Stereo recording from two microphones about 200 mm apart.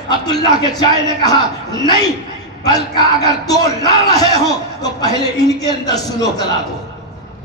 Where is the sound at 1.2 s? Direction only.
20° left (ahead or behind).